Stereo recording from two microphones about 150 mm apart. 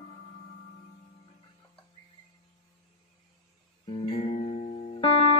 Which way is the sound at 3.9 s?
40° left (ahead or behind).